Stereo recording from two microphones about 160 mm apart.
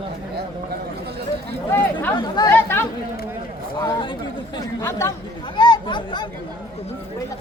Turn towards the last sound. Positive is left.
turn(degrees=30)  # may be behind; listen again after turning